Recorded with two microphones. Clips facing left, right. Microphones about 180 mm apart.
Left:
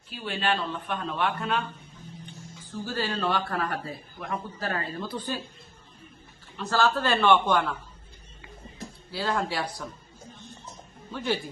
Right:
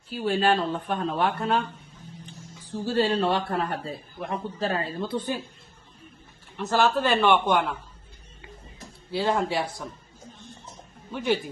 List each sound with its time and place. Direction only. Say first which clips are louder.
0.1 s speech: right 6 dB; 40° right (ahead or behind)
2.8 s a man's voice: right 6 dB; 25° right (ahead or behind)
6.6 s a man's voice: right 2 dB; 20° right (ahead or behind)
9.1 s a man's voice: right 4 dB; 20° right (ahead or behind)
11.1 s a man's voice: right 4 dB; 15° right (ahead or behind)